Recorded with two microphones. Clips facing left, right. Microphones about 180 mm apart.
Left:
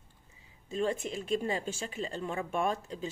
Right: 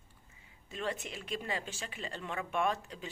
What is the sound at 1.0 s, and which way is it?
Speech, 35° left (ahead or behind).